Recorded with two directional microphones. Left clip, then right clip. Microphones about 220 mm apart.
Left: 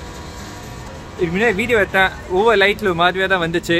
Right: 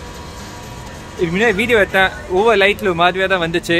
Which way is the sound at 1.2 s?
20° right (ahead or behind).